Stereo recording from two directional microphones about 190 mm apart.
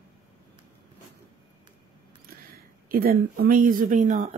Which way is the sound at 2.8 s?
50° right (ahead or behind).